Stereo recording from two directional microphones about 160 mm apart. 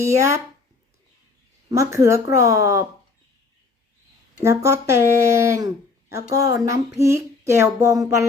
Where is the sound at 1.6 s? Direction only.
20° right (ahead or behind).